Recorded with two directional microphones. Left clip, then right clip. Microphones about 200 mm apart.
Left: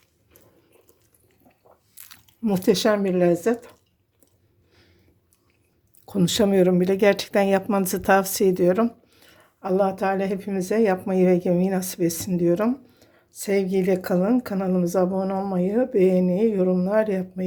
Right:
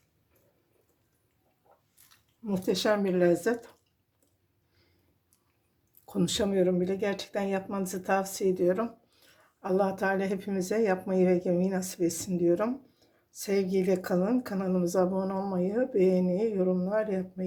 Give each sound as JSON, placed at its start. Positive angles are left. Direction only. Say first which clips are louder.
{"t": 2.0, "sound": "a sound", "louder": "left 10 dB", "side_deg": 45}
{"t": 3.0, "sound": "speech", "louder": "left 5 dB", "side_deg": 10}
{"t": 6.1, "sound": "speech", "louder": "left 8 dB", "side_deg": 20}